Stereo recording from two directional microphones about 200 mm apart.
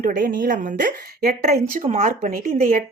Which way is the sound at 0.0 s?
45° right (ahead or behind).